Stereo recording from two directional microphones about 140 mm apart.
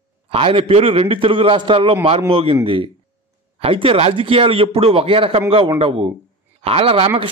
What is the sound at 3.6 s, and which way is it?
A man's voice, 40° right (ahead or behind).